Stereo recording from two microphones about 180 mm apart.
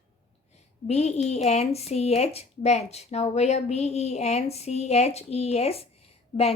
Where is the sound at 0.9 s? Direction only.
35° left (ahead or behind).